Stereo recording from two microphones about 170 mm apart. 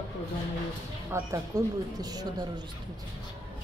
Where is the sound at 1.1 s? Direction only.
20° right (ahead or behind).